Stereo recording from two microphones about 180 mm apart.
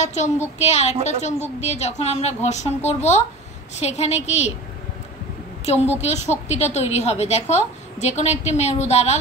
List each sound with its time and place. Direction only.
0.0 s a woman's voice: 40° left (ahead or behind)
5.7 s a woman's voice: 35° left (ahead or behind)